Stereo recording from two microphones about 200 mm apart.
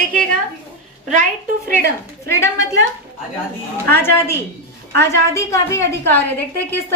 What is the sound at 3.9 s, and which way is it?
A woman's voice, 10° left (ahead or behind).